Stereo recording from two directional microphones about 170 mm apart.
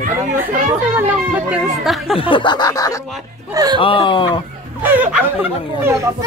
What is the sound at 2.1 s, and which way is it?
Snicker, 30° left (ahead or behind).